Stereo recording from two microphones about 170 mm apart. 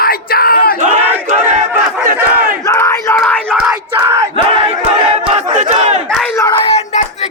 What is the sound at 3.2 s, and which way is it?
Crowd, 5° left (ahead or behind).